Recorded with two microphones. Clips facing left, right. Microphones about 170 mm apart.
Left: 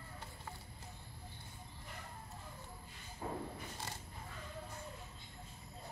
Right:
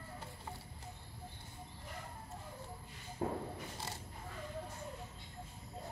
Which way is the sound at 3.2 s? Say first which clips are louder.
Right 5 dB; 55° right (ahead or behind).